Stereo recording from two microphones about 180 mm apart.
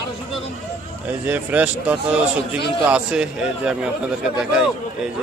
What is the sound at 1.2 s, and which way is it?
A man's voice, 10° right (ahead or behind).